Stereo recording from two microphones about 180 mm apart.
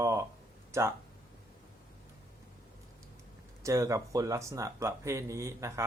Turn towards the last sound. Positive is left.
turn(degrees=-15)  # may be behind; listen again after turning